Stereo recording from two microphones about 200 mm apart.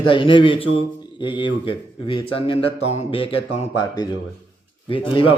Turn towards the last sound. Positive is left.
turn(degrees=25)  # may be behind; listen again after turning